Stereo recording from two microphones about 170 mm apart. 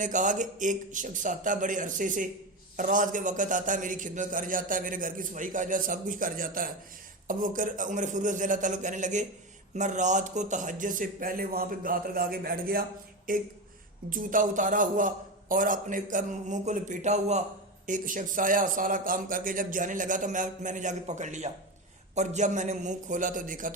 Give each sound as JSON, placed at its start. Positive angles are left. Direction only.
{"t": 0.0, "sound": "a man's voice", "side_deg": -50}